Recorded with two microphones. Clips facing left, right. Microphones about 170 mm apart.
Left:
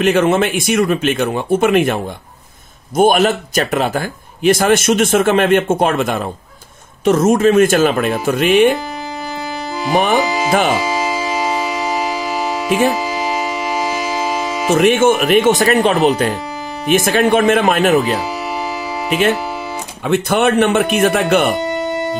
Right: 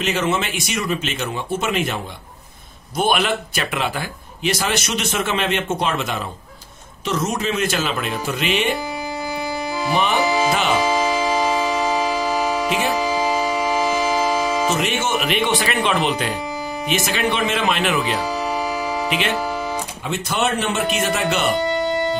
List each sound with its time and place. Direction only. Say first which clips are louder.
0.0 s speech: left 8 dB; 55° left (ahead or behind)
3.0 s speech: left 8 dB; 45° left (ahead or behind)
9.9 s speech: left 6 dB; 50° left (ahead or behind)
10.9 s music: even; 15° left (ahead or behind)
14.7 s speech: left 10 dB; 55° left (ahead or behind)
20.1 s speech: left 9 dB; 55° left (ahead or behind)